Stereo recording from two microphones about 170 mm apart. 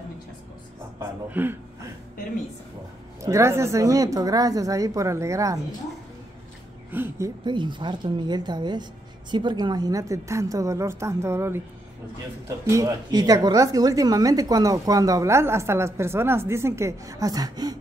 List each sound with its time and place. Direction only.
0.9 s a man's voice: 10° right (ahead or behind)
3.2 s a woman's voice: 15° right (ahead or behind)
6.9 s a woman's voice: 15° right (ahead or behind)